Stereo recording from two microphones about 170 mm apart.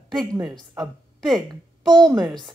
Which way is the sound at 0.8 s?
Centre (ahead or behind).